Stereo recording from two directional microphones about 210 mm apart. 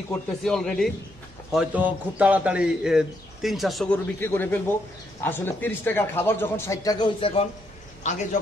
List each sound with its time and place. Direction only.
0.1 s a man's voice: centre (ahead or behind); by 8.4 s 35° left (ahead or behind)